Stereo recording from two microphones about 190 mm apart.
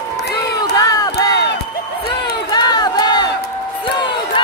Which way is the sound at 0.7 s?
20° left (ahead or behind).